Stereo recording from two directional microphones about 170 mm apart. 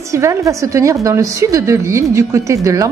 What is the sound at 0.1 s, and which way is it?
A woman's voice, 20° right (ahead or behind).